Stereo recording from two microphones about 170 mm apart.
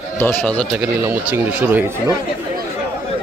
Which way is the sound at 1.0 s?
15° right (ahead or behind).